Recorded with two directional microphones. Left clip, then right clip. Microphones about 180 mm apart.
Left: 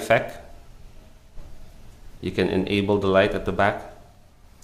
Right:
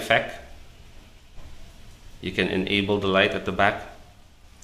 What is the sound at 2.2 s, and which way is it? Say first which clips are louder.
Speech: left 2 dB; 30° left (ahead or behind).